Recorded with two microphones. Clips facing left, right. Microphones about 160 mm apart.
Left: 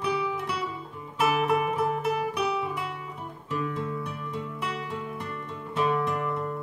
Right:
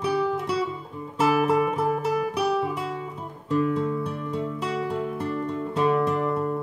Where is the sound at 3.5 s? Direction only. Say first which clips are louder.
Right 8 dB; 30° right (ahead or behind).